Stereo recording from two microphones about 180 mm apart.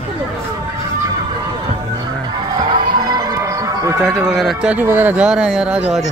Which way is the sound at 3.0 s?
20° right (ahead or behind).